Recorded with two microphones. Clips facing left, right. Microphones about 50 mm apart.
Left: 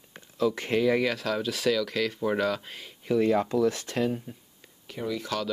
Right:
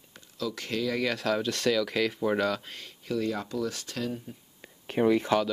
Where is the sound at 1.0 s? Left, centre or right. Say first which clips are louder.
Even; centre.